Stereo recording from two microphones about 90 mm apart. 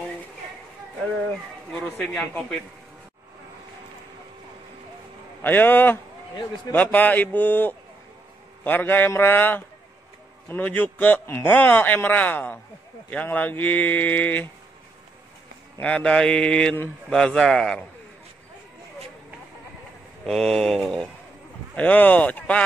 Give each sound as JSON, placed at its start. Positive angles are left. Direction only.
{"t": 2.1, "sound": "speech", "side_deg": 5}
{"t": 5.4, "sound": "speech", "side_deg": 20}
{"t": 11.5, "sound": "speech", "side_deg": 20}
{"t": 15.8, "sound": "mantra", "side_deg": 10}
{"t": 20.2, "sound": "speech", "side_deg": 5}
{"t": 21.7, "sound": "mantra", "side_deg": 15}